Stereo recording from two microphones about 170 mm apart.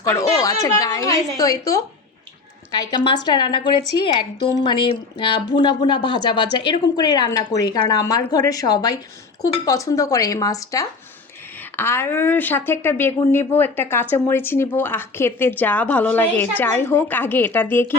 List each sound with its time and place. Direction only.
0.0 s a woman's voice: 20° left (ahead or behind)